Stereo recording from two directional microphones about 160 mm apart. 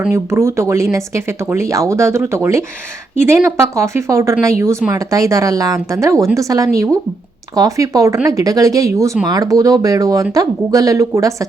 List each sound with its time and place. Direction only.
0.0 s speech: 15° right (ahead or behind)